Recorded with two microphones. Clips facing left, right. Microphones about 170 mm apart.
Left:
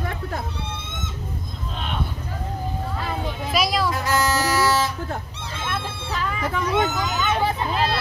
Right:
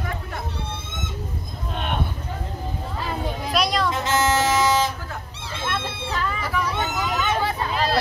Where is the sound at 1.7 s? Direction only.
55° right (ahead or behind).